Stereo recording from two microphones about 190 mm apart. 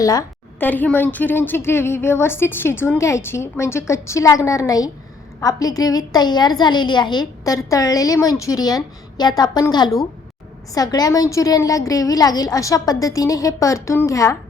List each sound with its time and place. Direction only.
0.0 s a woman's voice: 20° left (ahead or behind)